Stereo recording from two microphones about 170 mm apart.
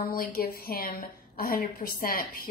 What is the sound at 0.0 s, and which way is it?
A woman's voice, 60° left (ahead or behind).